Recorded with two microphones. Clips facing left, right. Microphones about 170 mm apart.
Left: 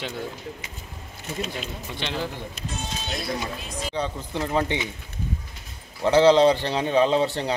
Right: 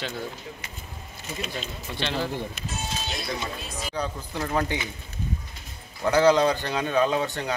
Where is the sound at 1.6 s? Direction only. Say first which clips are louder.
Even; 15° left (ahead or behind).